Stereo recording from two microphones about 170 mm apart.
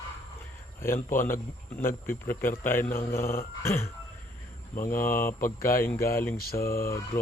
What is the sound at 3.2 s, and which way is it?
Speech, 60° left (ahead or behind).